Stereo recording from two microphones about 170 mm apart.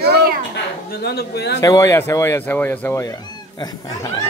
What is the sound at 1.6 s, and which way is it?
Speech, 20° left (ahead or behind).